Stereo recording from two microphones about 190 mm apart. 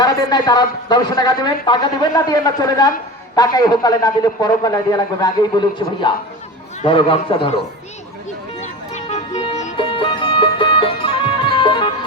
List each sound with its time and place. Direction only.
0.0 s speech: 20° left (ahead or behind)
8.6 s music: 35° left (ahead or behind)